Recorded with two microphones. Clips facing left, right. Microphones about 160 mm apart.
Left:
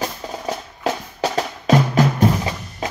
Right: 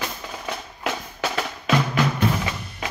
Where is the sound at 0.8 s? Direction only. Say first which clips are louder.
Left 5 dB; 40° left (ahead or behind).